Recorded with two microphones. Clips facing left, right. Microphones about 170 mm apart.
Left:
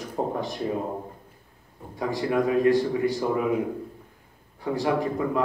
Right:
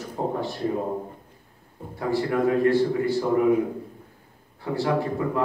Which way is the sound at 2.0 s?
15° left (ahead or behind).